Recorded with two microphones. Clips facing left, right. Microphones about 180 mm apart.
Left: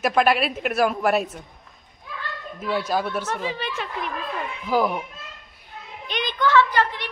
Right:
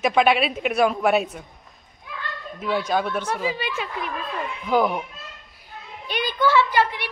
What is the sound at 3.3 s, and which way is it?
A child's voice, 10° right (ahead or behind).